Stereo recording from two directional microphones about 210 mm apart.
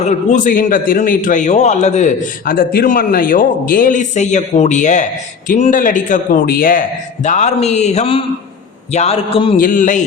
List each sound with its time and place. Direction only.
0.0 s a man's voice: 35° left (ahead or behind)
9.6 s a man's voice: 40° left (ahead or behind)